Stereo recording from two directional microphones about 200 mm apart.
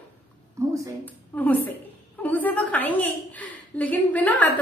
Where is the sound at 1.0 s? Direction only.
10° left (ahead or behind).